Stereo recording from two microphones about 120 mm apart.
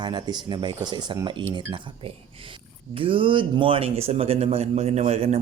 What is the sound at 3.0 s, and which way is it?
Speech, 45° right (ahead or behind).